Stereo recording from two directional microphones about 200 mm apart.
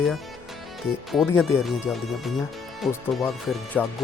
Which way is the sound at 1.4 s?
5° right (ahead or behind).